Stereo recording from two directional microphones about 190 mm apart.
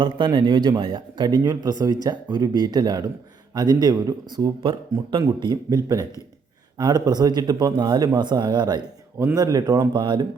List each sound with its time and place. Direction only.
0.0 s a man's voice: 25° right (ahead or behind)